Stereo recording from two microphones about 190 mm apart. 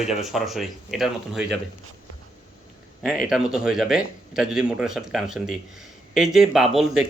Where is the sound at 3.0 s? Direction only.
5° right (ahead or behind).